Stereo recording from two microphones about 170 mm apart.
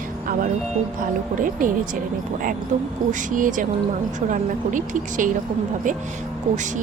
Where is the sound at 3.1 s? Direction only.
50° right (ahead or behind).